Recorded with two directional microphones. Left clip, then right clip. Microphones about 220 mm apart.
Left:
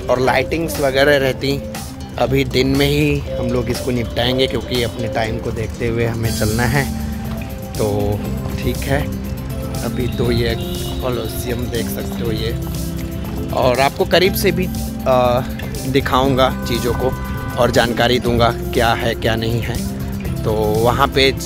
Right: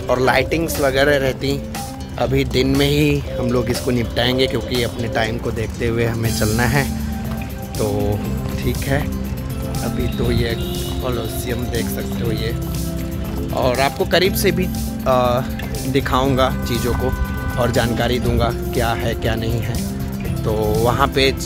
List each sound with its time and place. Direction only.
0.1 s speech: 5° right (ahead or behind)
3.4 s speech: 15° right (ahead or behind); by 9.0 s centre (ahead or behind)
10.2 s speech: 15° left (ahead or behind)
11.7 s speech: centre (ahead or behind)
13.6 s speech: 15° left (ahead or behind)
14.4 s speech: centre (ahead or behind)
17.6 s speech: 20° left (ahead or behind)
20.4 s speech: centre (ahead or behind)